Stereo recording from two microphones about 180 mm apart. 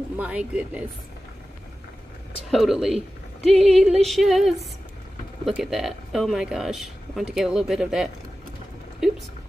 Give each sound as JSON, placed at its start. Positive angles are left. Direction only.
{"t": 0.2, "sound": "speech", "side_deg": -5}
{"t": 2.5, "sound": "speech", "side_deg": 0}
{"t": 9.0, "sound": "a sound", "side_deg": 0}